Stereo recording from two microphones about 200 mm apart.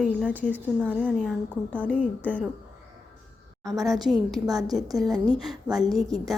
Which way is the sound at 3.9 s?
Centre (ahead or behind).